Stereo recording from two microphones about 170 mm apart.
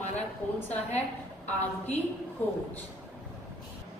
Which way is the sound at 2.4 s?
10° left (ahead or behind).